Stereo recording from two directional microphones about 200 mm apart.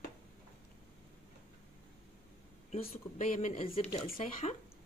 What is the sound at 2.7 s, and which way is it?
Speech, 35° left (ahead or behind).